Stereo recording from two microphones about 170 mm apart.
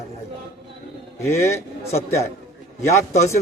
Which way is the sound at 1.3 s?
15° left (ahead or behind).